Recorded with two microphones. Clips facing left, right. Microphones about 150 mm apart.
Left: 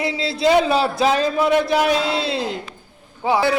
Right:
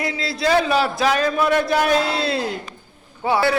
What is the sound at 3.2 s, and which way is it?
Speech, 15° left (ahead or behind).